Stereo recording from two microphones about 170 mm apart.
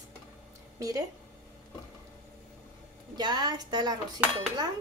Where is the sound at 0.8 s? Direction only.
20° right (ahead or behind).